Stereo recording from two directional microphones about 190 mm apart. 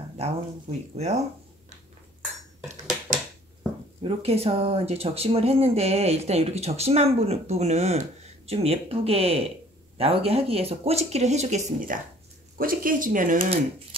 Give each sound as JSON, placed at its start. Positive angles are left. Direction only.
{"t": 0.2, "sound": "speech", "side_deg": -35}
{"t": 4.0, "sound": "speech", "side_deg": -35}
{"t": 12.5, "sound": "speech", "side_deg": -50}